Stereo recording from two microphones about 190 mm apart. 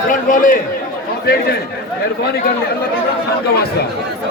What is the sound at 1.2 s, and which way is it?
Speech, 55° left (ahead or behind).